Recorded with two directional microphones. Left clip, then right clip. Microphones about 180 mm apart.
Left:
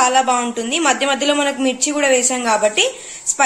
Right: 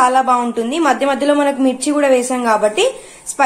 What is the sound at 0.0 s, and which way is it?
A woman's voice, centre (ahead or behind).